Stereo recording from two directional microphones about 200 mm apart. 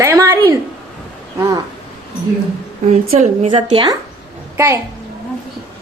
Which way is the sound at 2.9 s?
35° right (ahead or behind).